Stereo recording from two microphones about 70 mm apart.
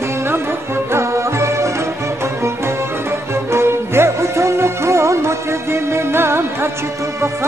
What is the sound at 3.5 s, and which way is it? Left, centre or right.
Music, right.